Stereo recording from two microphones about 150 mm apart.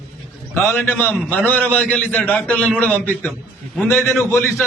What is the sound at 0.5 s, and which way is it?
A man's voice, 15° left (ahead or behind).